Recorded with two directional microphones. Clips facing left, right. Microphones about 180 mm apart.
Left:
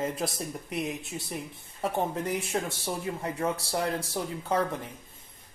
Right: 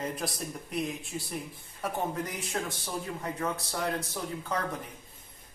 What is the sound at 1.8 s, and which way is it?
Speech, 25° left (ahead or behind).